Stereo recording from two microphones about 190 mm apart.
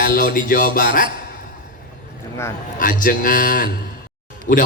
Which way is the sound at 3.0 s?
45° left (ahead or behind).